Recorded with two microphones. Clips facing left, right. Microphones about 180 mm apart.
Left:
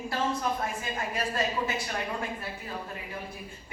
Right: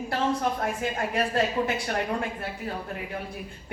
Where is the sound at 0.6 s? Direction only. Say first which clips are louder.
Right 5 dB; 65° right (ahead or behind).